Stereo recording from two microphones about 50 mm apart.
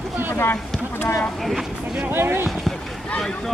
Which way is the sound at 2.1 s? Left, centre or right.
Right.